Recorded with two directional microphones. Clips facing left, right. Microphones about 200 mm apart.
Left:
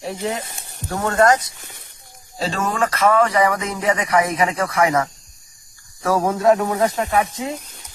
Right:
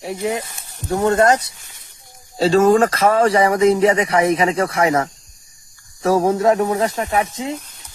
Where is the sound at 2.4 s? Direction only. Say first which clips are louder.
Right 9 dB; 30° right (ahead or behind).